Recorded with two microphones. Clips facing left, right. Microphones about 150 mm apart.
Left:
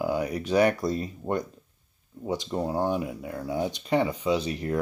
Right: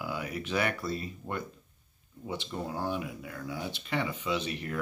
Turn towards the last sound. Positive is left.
turn(degrees=35)  # may be behind; listen again after turning